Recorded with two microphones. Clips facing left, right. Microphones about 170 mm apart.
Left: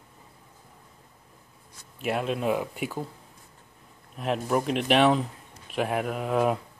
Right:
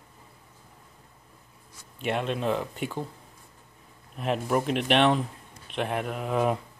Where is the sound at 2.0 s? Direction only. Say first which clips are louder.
Left 1 dB; 5° left (ahead or behind).